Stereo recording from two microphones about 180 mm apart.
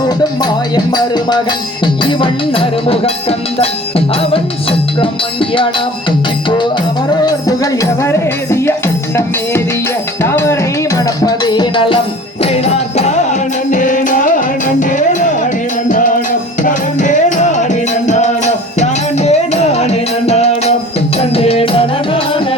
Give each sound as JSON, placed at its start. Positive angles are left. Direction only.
{"t": 0.9, "sound": "music", "side_deg": 25}
{"t": 7.3, "sound": "music", "side_deg": 20}
{"t": 10.2, "sound": "music", "side_deg": 15}
{"t": 12.4, "sound": "music", "side_deg": 35}